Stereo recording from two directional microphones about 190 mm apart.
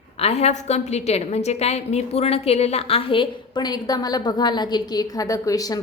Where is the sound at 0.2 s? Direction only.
35° left (ahead or behind).